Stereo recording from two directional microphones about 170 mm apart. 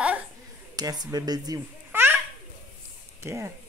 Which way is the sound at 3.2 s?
15° right (ahead or behind).